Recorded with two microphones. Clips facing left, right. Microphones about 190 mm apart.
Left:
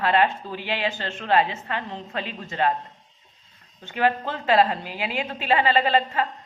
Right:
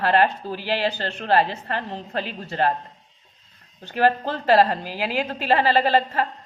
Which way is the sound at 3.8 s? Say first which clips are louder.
Right 3 dB; 40° right (ahead or behind).